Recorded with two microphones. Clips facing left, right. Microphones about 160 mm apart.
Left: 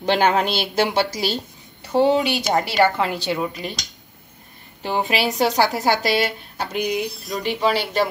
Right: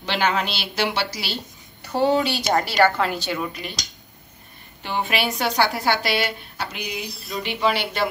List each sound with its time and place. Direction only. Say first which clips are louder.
0.0 s a woman's voice: left 5 dB; 50° left (ahead or behind)
1.8 s a woman's voice: left 3 dB; 20° left (ahead or behind)
5.0 s speech: left 4 dB; 35° left (ahead or behind)